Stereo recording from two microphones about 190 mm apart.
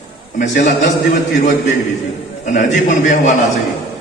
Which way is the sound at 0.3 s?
40° left (ahead or behind).